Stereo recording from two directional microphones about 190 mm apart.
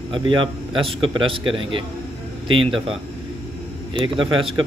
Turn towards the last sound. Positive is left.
turn(degrees=-25)  # may be behind; listen again after turning